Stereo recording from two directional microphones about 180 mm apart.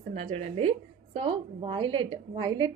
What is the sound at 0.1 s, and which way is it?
A woman's voice, 35° right (ahead or behind).